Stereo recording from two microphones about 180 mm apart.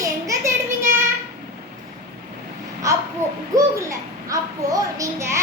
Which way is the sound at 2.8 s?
15° right (ahead or behind).